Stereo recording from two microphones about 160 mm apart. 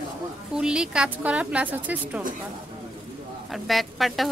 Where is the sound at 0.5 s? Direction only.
5° right (ahead or behind).